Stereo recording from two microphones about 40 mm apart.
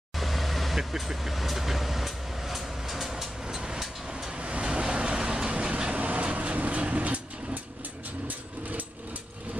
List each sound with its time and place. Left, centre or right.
0.2 s vehicle: centre
3.5 s vehicle: centre
4.4 s vehicle: right